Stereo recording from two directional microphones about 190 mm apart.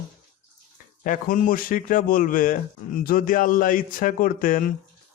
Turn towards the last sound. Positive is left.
turn(degrees=45)  # may be behind; listen again after turning